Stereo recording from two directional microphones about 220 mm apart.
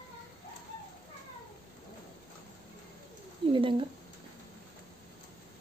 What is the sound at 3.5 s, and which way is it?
Speech, 25° right (ahead or behind).